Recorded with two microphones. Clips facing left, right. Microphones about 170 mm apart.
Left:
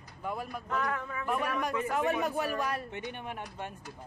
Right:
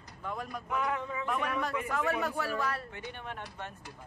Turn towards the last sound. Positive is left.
turn(degrees=10)  # may be behind; listen again after turning